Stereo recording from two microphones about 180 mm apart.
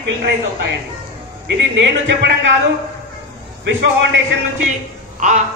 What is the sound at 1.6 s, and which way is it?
Speech, 85° right.